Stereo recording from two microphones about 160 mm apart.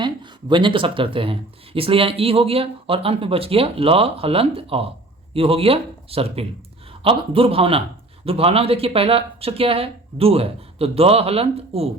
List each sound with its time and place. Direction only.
0.0 s speech: 30° right (ahead or behind)